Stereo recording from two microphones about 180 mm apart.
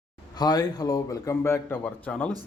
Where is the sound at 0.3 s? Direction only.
20° left (ahead or behind).